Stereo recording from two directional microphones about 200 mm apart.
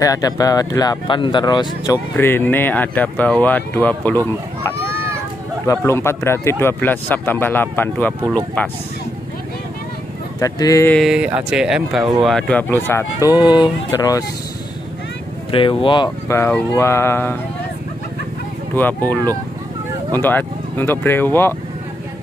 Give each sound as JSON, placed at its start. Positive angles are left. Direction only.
{"t": 0.0, "sound": "speech", "side_deg": 20}
{"t": 5.7, "sound": "speech", "side_deg": 15}
{"t": 10.4, "sound": "speech", "side_deg": 15}
{"t": 11.0, "sound": "speech", "side_deg": -5}
{"t": 15.5, "sound": "speech", "side_deg": 25}
{"t": 20.1, "sound": "speech", "side_deg": 10}